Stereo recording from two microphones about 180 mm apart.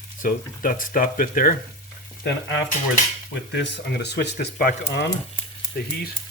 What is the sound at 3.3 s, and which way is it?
Speech, 75° left (ahead or behind).